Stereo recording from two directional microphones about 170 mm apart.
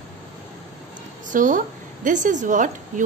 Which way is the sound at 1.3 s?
50° right (ahead or behind).